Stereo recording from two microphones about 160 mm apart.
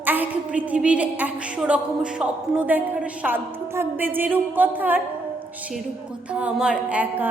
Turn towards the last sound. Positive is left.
turn(degrees=-10)  # may be behind; listen again after turning